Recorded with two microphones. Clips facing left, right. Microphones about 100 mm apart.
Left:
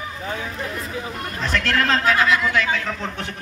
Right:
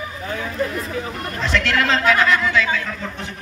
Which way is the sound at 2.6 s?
55° left (ahead or behind).